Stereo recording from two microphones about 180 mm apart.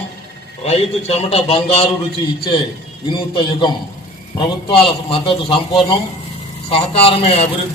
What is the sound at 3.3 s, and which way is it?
A man's voice, 25° left (ahead or behind).